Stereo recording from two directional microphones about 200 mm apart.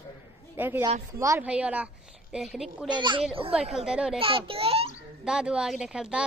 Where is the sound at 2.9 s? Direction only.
25° right (ahead or behind).